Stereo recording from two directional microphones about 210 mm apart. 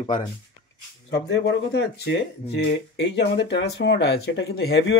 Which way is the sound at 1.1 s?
55° left (ahead or behind).